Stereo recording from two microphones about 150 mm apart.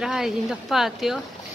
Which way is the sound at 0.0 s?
5° right (ahead or behind).